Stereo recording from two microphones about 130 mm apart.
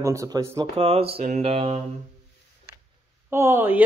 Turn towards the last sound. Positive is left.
turn(degrees=-15)  # may be behind; listen again after turning